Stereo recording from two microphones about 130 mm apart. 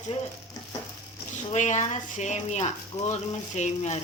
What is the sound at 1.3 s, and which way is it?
Speech, 70° left (ahead or behind).